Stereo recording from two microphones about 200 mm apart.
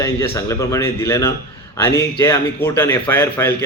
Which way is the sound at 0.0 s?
15° left (ahead or behind).